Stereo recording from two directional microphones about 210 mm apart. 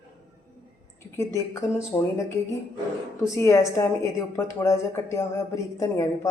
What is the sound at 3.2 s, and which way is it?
Speech, 15° left (ahead or behind).